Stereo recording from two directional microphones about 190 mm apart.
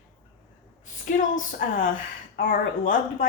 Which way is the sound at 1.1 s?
45° left (ahead or behind).